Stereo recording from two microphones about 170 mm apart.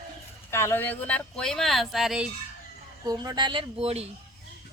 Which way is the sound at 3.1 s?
25° right (ahead or behind).